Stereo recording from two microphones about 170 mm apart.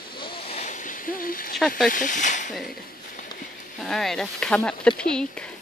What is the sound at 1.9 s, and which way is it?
Speech, 50° left (ahead or behind).